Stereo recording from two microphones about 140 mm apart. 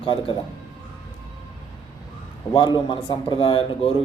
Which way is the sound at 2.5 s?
30° left (ahead or behind).